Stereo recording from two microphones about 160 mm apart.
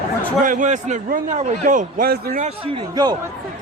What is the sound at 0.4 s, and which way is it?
A man's voice, 55° right (ahead or behind).